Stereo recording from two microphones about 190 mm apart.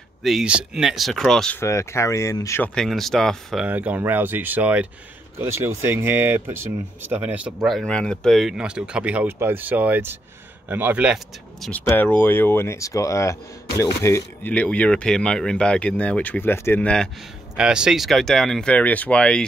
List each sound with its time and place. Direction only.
0.2 s speech: centre (ahead or behind)
1.6 s speech: 15° left (ahead or behind)
2.7 s speech: centre (ahead or behind)
11.6 s speech: 10° left (ahead or behind)